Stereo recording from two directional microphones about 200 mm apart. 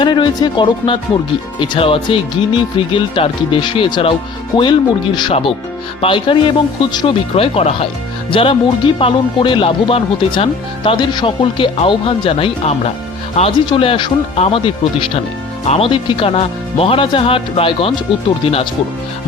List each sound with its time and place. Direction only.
0.0 s speech: 20° left (ahead or behind)
15.7 s speech: 25° left (ahead or behind)